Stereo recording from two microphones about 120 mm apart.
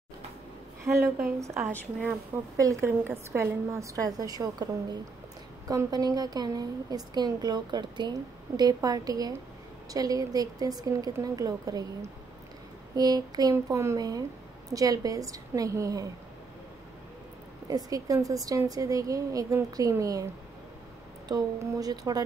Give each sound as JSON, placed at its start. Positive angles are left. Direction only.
{"t": 1.4, "sound": "a woman's voice", "side_deg": -20}
{"t": 12.9, "sound": "a woman's voice", "side_deg": -35}
{"t": 17.6, "sound": "a woman's voice", "side_deg": -30}
{"t": 21.3, "sound": "a woman's voice", "side_deg": -30}